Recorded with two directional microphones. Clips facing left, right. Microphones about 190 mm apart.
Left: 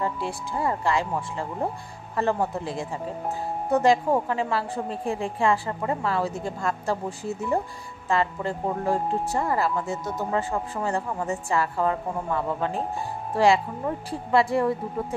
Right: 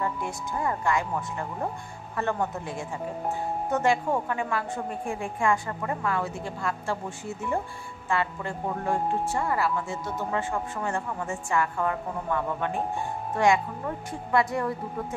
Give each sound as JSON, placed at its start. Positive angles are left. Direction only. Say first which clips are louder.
{"t": 0.0, "sound": "speech", "louder": "left 2 dB", "side_deg": 30}